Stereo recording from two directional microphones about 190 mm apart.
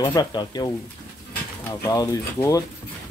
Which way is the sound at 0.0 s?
20° left (ahead or behind).